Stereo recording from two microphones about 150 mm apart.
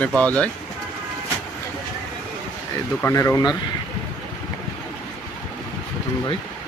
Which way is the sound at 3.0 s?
20° left (ahead or behind).